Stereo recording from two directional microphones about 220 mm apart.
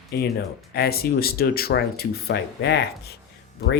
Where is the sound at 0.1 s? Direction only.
45° left (ahead or behind).